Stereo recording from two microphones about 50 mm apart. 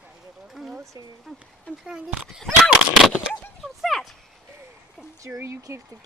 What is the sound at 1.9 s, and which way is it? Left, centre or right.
Speech, centre.